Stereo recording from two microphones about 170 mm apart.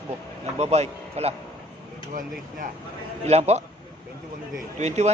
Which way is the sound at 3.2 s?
40° right (ahead or behind).